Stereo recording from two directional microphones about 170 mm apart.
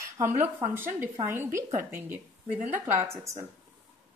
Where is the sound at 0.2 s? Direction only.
20° right (ahead or behind).